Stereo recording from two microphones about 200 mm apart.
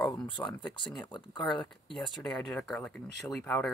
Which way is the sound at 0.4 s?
10° left (ahead or behind).